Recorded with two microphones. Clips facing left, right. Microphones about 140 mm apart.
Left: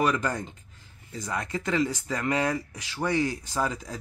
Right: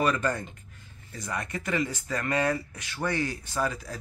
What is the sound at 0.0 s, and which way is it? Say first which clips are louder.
Speech: even; 10° left (ahead or behind).